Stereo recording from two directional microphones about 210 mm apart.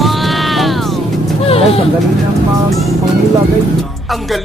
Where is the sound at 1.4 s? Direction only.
30° left (ahead or behind).